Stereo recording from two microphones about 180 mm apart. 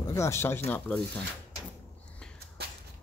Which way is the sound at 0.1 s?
15° left (ahead or behind).